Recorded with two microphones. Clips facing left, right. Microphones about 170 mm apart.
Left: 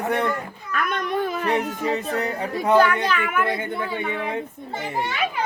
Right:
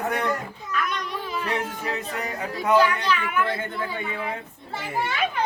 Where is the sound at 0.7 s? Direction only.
50° left (ahead or behind).